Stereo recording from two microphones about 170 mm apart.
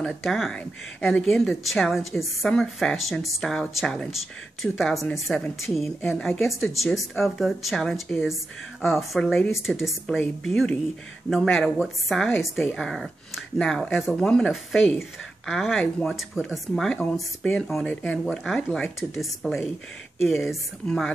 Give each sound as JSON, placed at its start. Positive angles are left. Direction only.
{"t": 0.0, "sound": "speech", "side_deg": 0}